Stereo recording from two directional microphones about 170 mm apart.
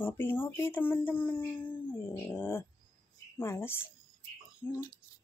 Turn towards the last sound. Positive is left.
turn(degrees=10)  # may be behind; listen again after turning